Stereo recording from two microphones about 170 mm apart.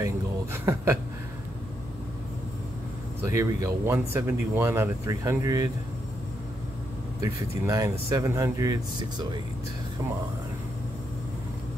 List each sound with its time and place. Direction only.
0.0 s a sound: 15° right (ahead or behind)
3.3 s speech: 15° right (ahead or behind)
7.2 s speech: 20° right (ahead or behind)